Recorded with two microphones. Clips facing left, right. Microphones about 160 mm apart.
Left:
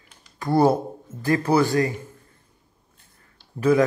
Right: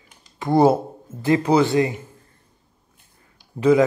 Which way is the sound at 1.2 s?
20° right (ahead or behind).